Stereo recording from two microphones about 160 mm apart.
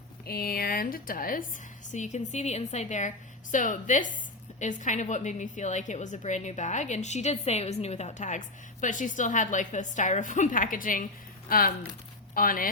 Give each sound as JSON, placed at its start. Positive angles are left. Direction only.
{"t": 0.3, "sound": "speech", "side_deg": 70}
{"t": 1.9, "sound": "a woman's voice", "side_deg": 50}